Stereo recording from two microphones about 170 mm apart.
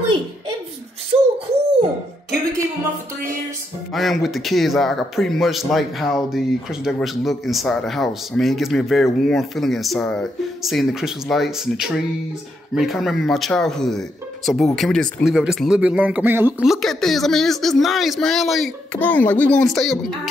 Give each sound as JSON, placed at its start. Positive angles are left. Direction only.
{"t": 1.1, "sound": "a sound", "side_deg": -35}
{"t": 3.9, "sound": "speech", "side_deg": 0}
{"t": 18.9, "sound": "speech", "side_deg": 10}